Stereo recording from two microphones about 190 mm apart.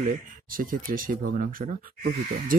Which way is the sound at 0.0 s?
50° right (ahead or behind).